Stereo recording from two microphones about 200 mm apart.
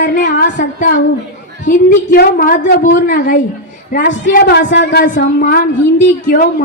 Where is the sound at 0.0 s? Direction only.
40° left (ahead or behind).